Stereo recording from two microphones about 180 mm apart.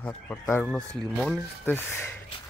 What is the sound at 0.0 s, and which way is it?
Speech, 10° left (ahead or behind).